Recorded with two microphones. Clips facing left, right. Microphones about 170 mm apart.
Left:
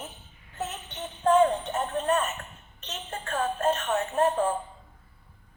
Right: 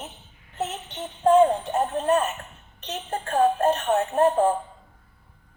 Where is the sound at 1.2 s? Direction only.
30° right (ahead or behind).